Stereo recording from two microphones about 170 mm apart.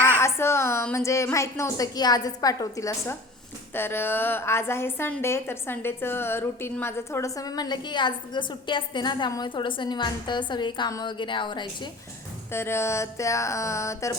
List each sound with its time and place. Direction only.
0.2 s a woman's voice: 15° left (ahead or behind)
12.5 s speech: 15° left (ahead or behind)